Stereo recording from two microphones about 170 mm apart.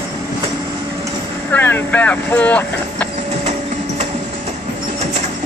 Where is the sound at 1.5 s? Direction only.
10° left (ahead or behind).